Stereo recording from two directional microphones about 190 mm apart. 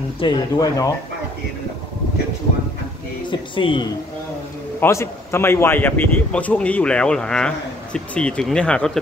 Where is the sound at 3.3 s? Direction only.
25° left (ahead or behind).